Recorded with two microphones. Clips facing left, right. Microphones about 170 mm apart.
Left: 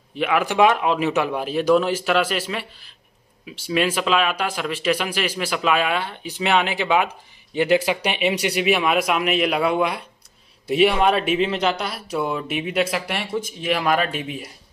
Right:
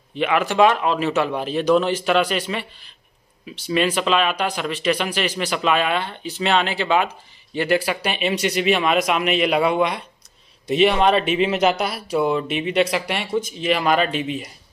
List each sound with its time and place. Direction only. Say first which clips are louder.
0.2 s speech: right 1 dB; 5° left (ahead or behind)